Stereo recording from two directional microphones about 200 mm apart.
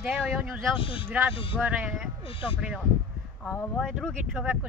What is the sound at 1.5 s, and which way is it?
Speech, 5° right (ahead or behind).